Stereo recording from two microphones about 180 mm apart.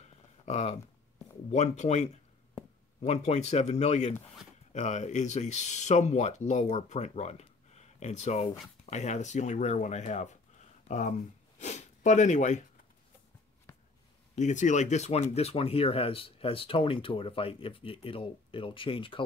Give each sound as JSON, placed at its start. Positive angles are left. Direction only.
{"t": 0.5, "sound": "speech", "side_deg": 35}
{"t": 14.3, "sound": "speech", "side_deg": 40}